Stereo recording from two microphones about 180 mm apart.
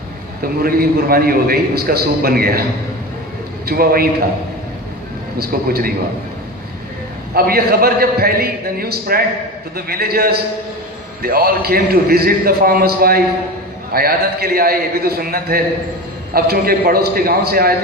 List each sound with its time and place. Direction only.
0.4 s a man's voice: 55° right (ahead or behind)
3.7 s a man's voice: 55° right (ahead or behind)
5.4 s a man's voice: 55° right (ahead or behind)
7.3 s a man's voice: 55° right (ahead or behind)